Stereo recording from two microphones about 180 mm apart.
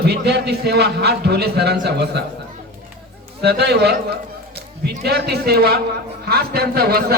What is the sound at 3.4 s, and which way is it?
A man's voice, 65° right (ahead or behind).